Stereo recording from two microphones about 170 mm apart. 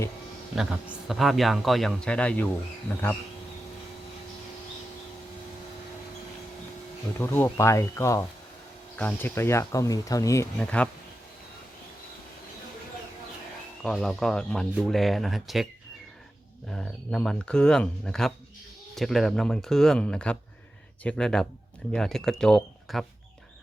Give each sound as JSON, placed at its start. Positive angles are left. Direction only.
{"t": 0.5, "sound": "speech", "side_deg": -5}
{"t": 7.2, "sound": "speech", "side_deg": 15}
{"t": 10.6, "sound": "speech", "side_deg": 5}
{"t": 13.8, "sound": "speech", "side_deg": 5}
{"t": 16.7, "sound": "speech", "side_deg": 5}